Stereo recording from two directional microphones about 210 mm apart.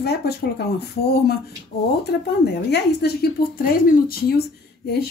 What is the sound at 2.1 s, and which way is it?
Speech, 55° left (ahead or behind).